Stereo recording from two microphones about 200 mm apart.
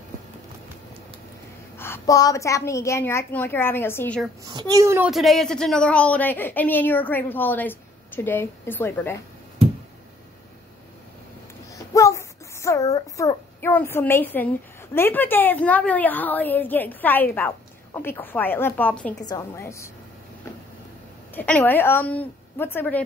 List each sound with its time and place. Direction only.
1.8 s a woman's voice: 15° left (ahead or behind)
4.5 s a child's voice: 20° right (ahead or behind)
5.1 s a woman's voice: centre (ahead or behind)
11.7 s a sound: 15° left (ahead or behind)
15.0 s a woman's voice: 10° left (ahead or behind)
21.4 s a woman's voice: 10° left (ahead or behind)